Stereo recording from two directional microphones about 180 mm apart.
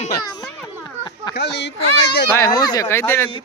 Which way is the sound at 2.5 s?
20° left (ahead or behind).